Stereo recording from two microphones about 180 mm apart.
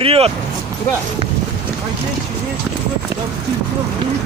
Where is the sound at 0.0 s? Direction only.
30° right (ahead or behind).